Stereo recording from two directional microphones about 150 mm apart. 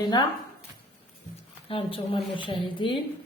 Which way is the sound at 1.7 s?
35° left (ahead or behind).